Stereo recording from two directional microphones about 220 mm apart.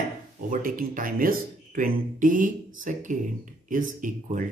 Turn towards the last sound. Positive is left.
turn(degrees=-35)  # may be behind; listen again after turning